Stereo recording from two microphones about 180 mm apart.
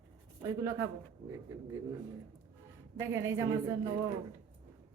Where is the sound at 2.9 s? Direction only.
15° right (ahead or behind).